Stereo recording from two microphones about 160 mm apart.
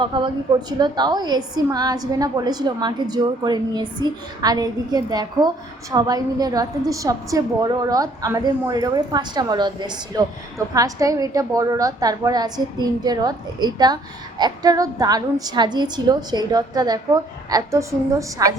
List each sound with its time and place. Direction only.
0.0 s a woman's voice: 30° right (ahead or behind)